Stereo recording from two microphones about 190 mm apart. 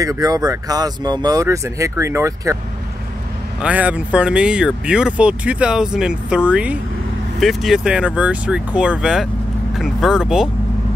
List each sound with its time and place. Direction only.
0.0 s speech: 20° right (ahead or behind)
3.6 s speech: 10° right (ahead or behind)